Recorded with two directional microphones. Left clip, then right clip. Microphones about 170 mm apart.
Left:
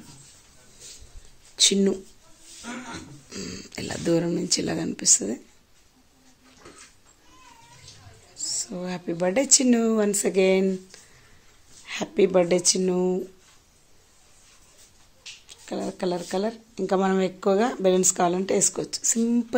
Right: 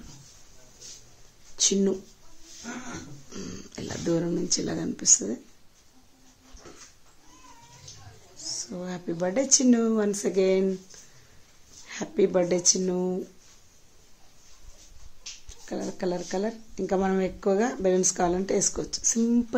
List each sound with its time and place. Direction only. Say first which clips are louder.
1.6 s speech: left 4 dB; 10° left (ahead or behind)
3.3 s speech: left 6 dB; centre (ahead or behind)
8.4 s bird: left 4 dB; 25° left (ahead or behind)
8.6 s speech: left 3 dB; 5° left (ahead or behind)
11.9 s speech: left 3 dB; 10° left (ahead or behind)
15.6 s speech: left 2 dB; 5° left (ahead or behind)